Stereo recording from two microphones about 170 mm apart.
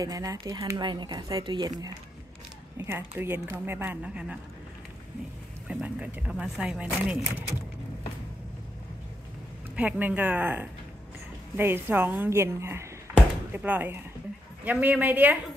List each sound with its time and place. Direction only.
0.0 s speech: 20° right (ahead or behind)
2.8 s a woman's voice: 15° right (ahead or behind)
5.7 s speech: 10° right (ahead or behind)
9.8 s a woman's voice: 10° right (ahead or behind)